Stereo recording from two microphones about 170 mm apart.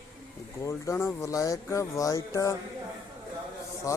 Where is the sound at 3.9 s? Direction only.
20° left (ahead or behind).